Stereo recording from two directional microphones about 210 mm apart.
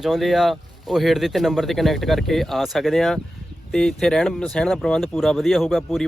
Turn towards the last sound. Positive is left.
turn(degrees=0)  # may be behind; listen again after turning